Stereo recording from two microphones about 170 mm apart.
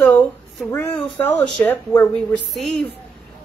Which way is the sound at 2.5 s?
Centre (ahead or behind).